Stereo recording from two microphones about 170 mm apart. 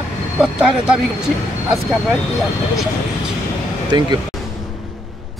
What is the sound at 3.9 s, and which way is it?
Speech, 25° right (ahead or behind).